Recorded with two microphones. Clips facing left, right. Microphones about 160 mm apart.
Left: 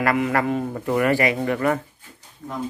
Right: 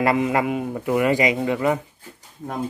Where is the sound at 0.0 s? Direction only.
20° right (ahead or behind).